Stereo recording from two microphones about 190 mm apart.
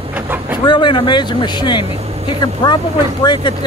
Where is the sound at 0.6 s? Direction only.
25° left (ahead or behind).